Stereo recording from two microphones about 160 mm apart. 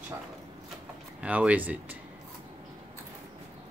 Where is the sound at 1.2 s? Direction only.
10° right (ahead or behind).